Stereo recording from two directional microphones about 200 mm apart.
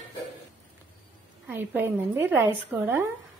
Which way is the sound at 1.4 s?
10° right (ahead or behind).